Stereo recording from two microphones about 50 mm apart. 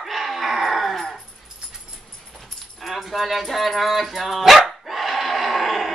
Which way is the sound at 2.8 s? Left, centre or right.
Centre.